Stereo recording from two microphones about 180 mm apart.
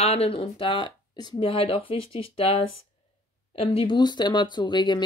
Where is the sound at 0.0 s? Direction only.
35° left (ahead or behind).